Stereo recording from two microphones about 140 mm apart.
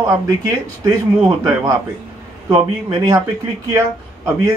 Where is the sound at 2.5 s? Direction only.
30° right (ahead or behind).